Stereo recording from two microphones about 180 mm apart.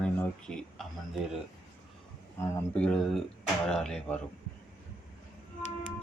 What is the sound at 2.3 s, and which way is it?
Speech, 10° left (ahead or behind).